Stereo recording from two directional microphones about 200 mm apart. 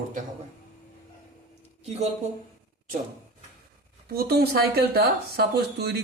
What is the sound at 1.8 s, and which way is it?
Speech, 35° right (ahead or behind).